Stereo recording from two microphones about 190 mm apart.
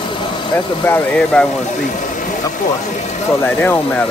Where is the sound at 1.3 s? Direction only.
5° left (ahead or behind).